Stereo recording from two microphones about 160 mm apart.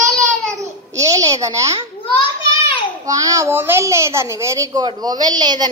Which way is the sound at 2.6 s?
30° left (ahead or behind).